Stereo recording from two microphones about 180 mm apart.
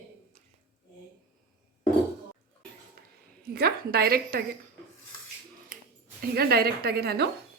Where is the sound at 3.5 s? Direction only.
60° right (ahead or behind).